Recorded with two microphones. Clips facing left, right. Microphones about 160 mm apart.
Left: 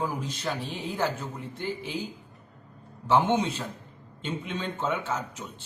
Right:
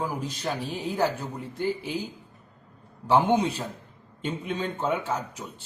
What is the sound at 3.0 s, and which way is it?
Speech, 10° right (ahead or behind).